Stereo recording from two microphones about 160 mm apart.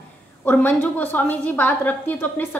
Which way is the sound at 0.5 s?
10° left (ahead or behind).